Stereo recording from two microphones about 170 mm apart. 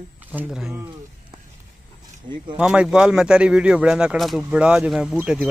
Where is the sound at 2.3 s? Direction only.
35° right (ahead or behind).